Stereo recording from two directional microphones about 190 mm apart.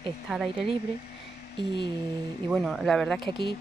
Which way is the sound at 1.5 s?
25° left (ahead or behind).